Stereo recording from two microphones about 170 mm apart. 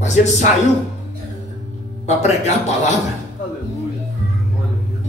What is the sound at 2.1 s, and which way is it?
Speech, 40° left (ahead or behind).